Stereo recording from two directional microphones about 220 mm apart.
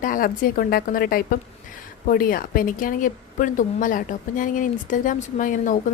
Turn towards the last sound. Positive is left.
turn(degrees=35)  # may be behind; listen again after turning